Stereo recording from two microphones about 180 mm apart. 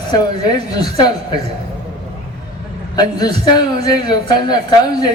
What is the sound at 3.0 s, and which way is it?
A man's voice, 20° left (ahead or behind).